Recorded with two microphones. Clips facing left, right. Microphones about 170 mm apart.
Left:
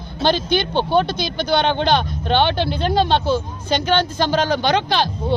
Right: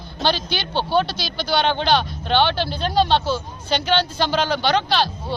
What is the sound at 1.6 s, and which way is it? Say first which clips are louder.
Speech: even; 20° left (ahead or behind).